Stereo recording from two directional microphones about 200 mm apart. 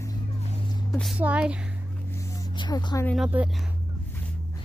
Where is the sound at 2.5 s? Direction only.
20° left (ahead or behind).